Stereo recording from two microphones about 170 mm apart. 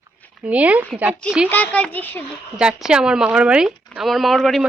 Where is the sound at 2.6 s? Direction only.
5° right (ahead or behind).